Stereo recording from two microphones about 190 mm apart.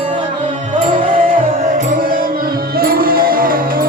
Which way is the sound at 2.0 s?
50° right (ahead or behind).